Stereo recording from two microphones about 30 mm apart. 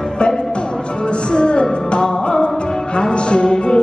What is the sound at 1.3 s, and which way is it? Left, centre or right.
Music, left.